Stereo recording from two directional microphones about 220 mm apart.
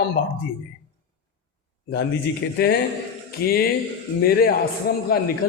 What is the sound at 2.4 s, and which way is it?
A man's voice, 55° left (ahead or behind).